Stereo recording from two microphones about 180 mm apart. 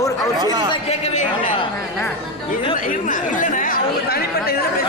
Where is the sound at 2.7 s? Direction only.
50° left (ahead or behind).